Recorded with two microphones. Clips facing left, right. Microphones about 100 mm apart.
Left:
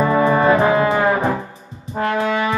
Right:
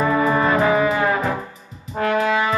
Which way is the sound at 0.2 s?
30° left (ahead or behind).